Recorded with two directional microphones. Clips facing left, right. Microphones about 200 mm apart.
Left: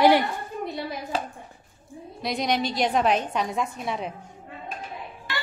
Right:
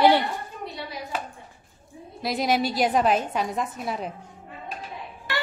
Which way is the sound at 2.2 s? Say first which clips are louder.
Right 2 dB; 5° right (ahead or behind).